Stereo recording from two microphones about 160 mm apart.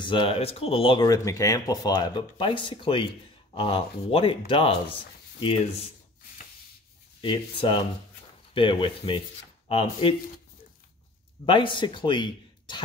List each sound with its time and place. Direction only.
0.0 s speech: 30° left (ahead or behind)
7.2 s speech: 30° left (ahead or behind)
11.4 s speech: 30° left (ahead or behind)